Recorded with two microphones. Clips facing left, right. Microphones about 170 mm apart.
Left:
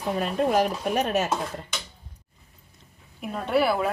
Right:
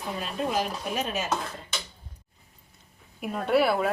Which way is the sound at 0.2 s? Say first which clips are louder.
Left 6 dB; 55° left (ahead or behind).